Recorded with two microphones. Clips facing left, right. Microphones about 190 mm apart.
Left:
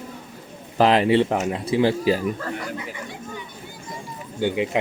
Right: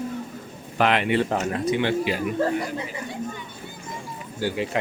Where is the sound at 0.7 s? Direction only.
35° left (ahead or behind).